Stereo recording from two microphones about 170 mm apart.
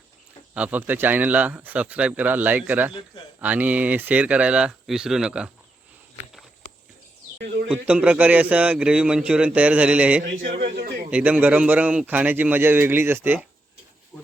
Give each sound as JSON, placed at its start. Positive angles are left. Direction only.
{"t": 0.5, "sound": "a man's voice", "side_deg": -10}
{"t": 7.4, "sound": "a sound", "side_deg": -90}
{"t": 7.7, "sound": "a man's voice", "side_deg": -5}
{"t": 10.2, "sound": "a man's voice", "side_deg": -80}
{"t": 11.1, "sound": "a man's voice", "side_deg": -10}